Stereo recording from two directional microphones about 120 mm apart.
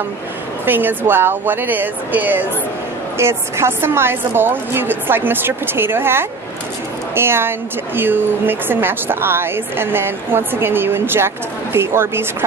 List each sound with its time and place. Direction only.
0.7 s a woman's voice: 15° right (ahead or behind)